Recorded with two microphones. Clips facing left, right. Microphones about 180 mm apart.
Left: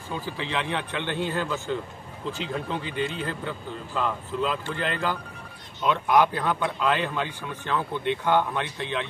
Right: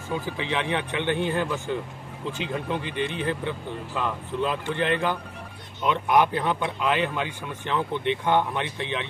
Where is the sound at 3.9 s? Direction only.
15° right (ahead or behind).